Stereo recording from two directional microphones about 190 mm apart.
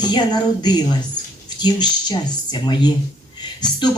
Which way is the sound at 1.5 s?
20° left (ahead or behind).